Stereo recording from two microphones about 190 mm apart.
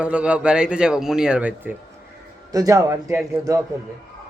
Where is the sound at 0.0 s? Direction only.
5° right (ahead or behind).